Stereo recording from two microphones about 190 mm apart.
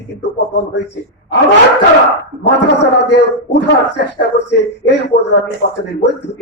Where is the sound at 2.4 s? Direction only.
65° left (ahead or behind).